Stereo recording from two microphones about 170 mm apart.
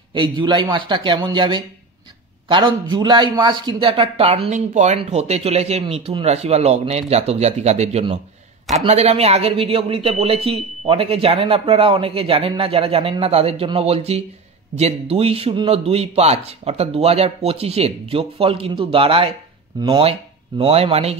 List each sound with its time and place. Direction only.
0.1 s speech: 30° right (ahead or behind)
20.1 s speech: 35° right (ahead or behind)